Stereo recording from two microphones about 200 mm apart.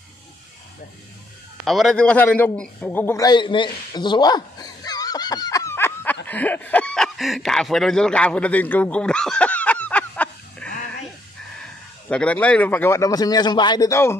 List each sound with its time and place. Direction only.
1.7 s a man's voice: centre (ahead or behind)
12.1 s a man's voice: 5° left (ahead or behind)